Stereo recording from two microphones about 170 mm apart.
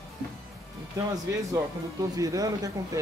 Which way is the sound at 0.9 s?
20° right (ahead or behind).